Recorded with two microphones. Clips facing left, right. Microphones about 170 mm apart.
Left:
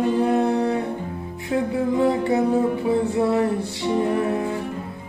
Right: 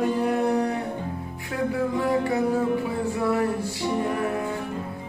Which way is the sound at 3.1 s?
25° left (ahead or behind).